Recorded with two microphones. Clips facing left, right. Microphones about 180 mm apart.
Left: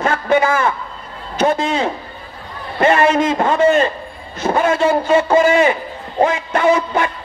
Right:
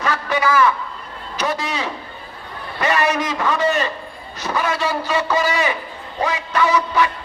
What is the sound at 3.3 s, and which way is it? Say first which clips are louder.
A man's voice: left 6 dB; 50° left (ahead or behind).